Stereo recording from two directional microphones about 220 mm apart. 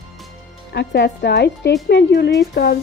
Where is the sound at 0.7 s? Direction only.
50° left (ahead or behind).